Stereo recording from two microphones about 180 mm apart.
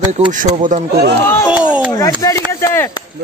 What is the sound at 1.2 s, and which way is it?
Speech, 15° left (ahead or behind).